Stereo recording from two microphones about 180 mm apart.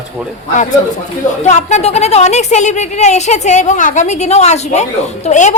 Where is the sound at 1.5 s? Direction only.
40° left (ahead or behind).